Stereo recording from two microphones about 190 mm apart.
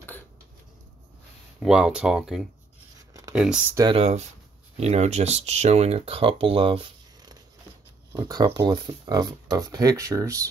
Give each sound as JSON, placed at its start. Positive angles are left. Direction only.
{"t": 1.6, "sound": "speech", "side_deg": -5}
{"t": 3.1, "sound": "a sound", "side_deg": -15}
{"t": 3.3, "sound": "speech", "side_deg": -5}
{"t": 3.7, "sound": "speech", "side_deg": -20}
{"t": 4.7, "sound": "speech", "side_deg": -35}